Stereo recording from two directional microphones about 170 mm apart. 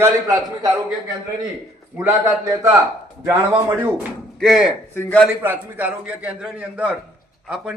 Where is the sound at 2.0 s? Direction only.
15° right (ahead or behind).